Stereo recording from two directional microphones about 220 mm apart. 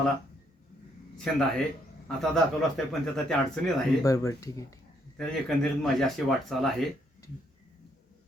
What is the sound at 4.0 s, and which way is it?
Speech, 15° left (ahead or behind).